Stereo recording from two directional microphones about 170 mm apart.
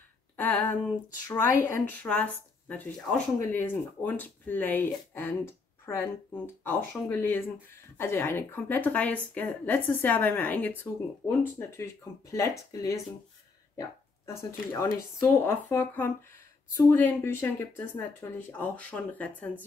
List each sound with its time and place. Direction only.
0.4 s speech: 10° left (ahead or behind)
13.7 s speech: 20° left (ahead or behind)